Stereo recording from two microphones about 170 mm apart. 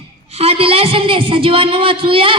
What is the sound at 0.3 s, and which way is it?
A man's voice, 35° right (ahead or behind).